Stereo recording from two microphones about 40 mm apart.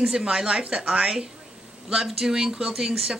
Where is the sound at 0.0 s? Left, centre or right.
Centre.